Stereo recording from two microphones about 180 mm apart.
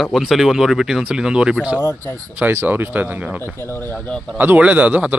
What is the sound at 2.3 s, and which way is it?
Speech, 10° right (ahead or behind).